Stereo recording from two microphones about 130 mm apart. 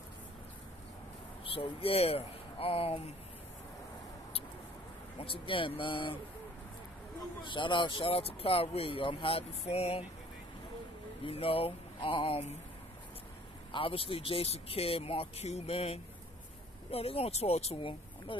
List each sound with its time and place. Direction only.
1.4 s speech: 45° left (ahead or behind)
5.2 s speech: 45° left (ahead or behind)
7.4 s speech: 40° left (ahead or behind)
11.2 s speech: 45° left (ahead or behind)
13.7 s speech: 45° left (ahead or behind)